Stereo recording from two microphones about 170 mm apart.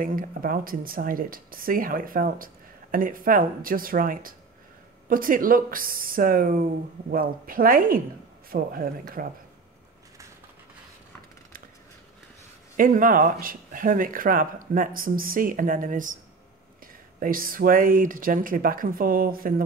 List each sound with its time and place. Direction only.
0.0 s speech: 55° right (ahead or behind)
12.7 s speech: 55° right (ahead or behind)